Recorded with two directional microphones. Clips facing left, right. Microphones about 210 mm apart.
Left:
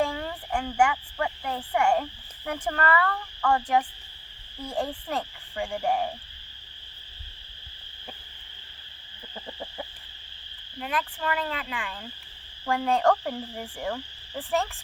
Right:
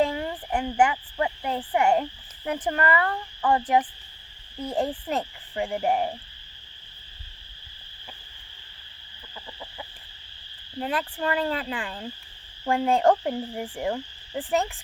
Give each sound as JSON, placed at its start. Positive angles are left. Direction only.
{"t": 0.0, "sound": "speech", "side_deg": -20}
{"t": 4.6, "sound": "frog", "side_deg": -20}
{"t": 9.3, "sound": "chicken", "side_deg": 35}
{"t": 10.8, "sound": "speech", "side_deg": -30}
{"t": 12.6, "sound": "frog", "side_deg": -25}